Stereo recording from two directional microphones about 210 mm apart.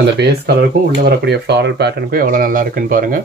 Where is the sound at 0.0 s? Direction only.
50° right (ahead or behind).